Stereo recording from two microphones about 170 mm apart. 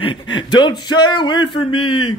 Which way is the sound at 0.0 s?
30° left (ahead or behind).